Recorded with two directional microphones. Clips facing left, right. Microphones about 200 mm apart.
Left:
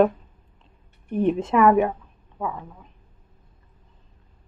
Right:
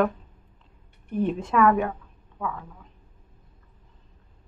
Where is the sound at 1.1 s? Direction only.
20° left (ahead or behind).